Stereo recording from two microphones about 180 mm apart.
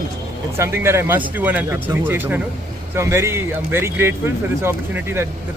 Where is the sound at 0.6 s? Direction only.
15° right (ahead or behind).